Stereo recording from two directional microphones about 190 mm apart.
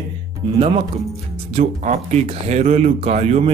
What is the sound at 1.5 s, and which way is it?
Speech, 35° right (ahead or behind).